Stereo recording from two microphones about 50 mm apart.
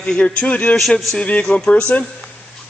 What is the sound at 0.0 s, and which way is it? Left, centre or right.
Speech, centre.